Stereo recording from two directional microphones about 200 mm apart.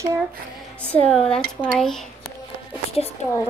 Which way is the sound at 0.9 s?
5° left (ahead or behind).